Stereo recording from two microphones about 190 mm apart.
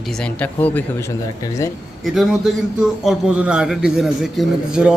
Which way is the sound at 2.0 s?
Centre (ahead or behind).